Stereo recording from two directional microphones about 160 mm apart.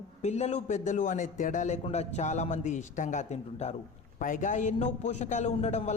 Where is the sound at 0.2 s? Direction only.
45° left (ahead or behind).